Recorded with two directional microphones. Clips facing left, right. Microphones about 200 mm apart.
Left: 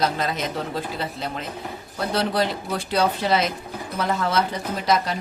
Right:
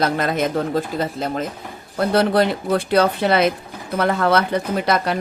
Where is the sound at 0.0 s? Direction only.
55° right (ahead or behind).